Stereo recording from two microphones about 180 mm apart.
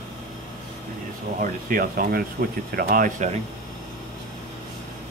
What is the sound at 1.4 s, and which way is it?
Speech, 50° right (ahead or behind).